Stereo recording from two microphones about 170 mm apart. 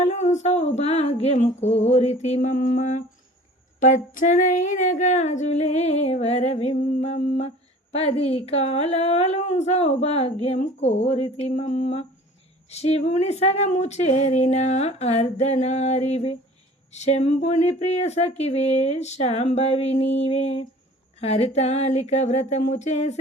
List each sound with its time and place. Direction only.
0.0 s speech: 45° left (ahead or behind)